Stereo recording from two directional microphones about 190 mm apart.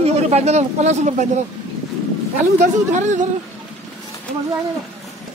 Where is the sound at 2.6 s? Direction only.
40° right (ahead or behind).